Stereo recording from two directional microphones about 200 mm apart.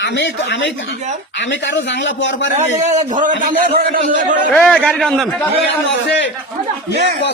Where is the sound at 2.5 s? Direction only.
35° right (ahead or behind).